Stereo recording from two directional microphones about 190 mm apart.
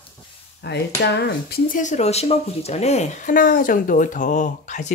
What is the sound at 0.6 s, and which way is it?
Speech, 60° left (ahead or behind).